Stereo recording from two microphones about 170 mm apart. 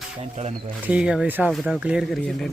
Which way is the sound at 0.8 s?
5° right (ahead or behind).